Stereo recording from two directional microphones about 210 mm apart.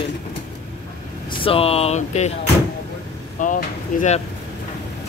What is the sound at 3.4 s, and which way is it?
Speech, 35° left (ahead or behind).